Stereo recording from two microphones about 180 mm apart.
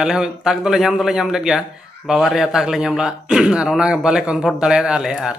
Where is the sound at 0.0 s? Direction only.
5° right (ahead or behind).